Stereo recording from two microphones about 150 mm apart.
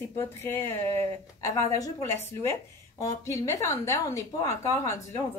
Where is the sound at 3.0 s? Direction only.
20° left (ahead or behind).